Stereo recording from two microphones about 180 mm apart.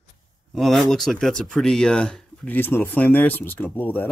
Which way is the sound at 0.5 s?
Centre (ahead or behind).